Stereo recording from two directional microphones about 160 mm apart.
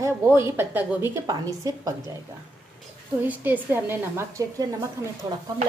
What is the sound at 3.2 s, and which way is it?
A woman's voice, 10° right (ahead or behind).